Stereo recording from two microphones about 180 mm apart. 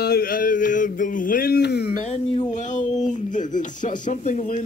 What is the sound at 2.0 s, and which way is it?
Speech, 45° left (ahead or behind).